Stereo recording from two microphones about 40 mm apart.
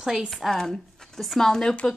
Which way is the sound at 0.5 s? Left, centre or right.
Centre.